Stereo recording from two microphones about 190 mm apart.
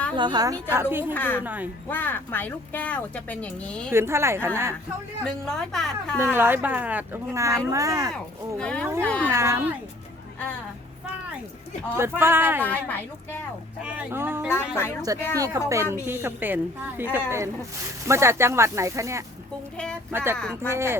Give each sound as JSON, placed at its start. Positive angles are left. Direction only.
{"t": 0.2, "sound": "speech", "side_deg": -20}
{"t": 1.1, "sound": "speech", "side_deg": 10}
{"t": 1.5, "sound": "speech", "side_deg": -10}
{"t": 1.9, "sound": "speech", "side_deg": 10}
{"t": 3.9, "sound": "speech", "side_deg": -15}
{"t": 5.2, "sound": "a woman's voice", "side_deg": 0}
{"t": 6.1, "sound": "speech", "side_deg": -10}
{"t": 8.1, "sound": "a woman's voice", "side_deg": 5}
{"t": 9.3, "sound": "speech", "side_deg": -15}
{"t": 11.9, "sound": "speech", "side_deg": -10}
{"t": 12.6, "sound": "speech", "side_deg": 10}
{"t": 13.8, "sound": "speech", "side_deg": -5}
{"t": 14.4, "sound": "speech", "side_deg": 10}
{"t": 15.4, "sound": "speech", "side_deg": -20}